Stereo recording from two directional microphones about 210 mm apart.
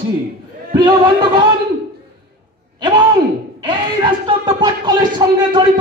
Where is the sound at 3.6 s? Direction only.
20° right (ahead or behind).